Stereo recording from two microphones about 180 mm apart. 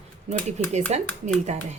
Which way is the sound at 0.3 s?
40° right (ahead or behind).